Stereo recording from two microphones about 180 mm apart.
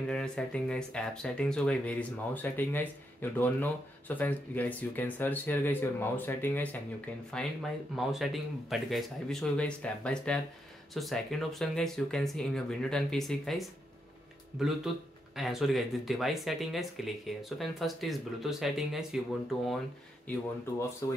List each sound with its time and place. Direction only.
0.1 s speech: 5° left (ahead or behind)
15.3 s speech: centre (ahead or behind)
21.0 s speech: 20° left (ahead or behind)